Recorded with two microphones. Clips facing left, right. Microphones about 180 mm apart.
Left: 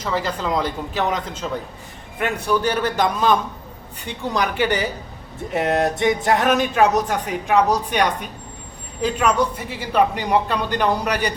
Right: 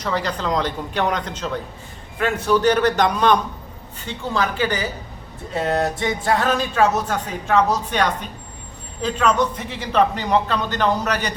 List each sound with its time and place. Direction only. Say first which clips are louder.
0.0 s a man's voice: even; 5° left (ahead or behind)
4.0 s a man's voice: even; 15° left (ahead or behind)